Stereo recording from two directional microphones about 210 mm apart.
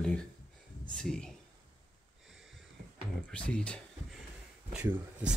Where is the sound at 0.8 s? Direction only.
5° left (ahead or behind).